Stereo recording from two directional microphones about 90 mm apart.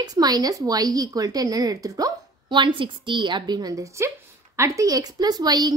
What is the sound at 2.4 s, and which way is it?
A woman's voice, 65° right (ahead or behind).